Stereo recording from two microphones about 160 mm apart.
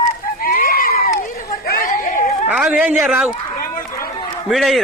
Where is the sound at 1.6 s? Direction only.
60° left (ahead or behind).